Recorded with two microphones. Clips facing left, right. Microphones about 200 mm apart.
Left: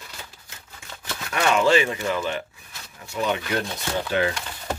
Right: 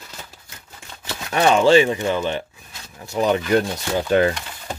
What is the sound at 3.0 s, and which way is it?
Speech, 40° right (ahead or behind).